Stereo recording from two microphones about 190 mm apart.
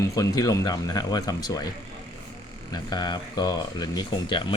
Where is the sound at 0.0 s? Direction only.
20° left (ahead or behind).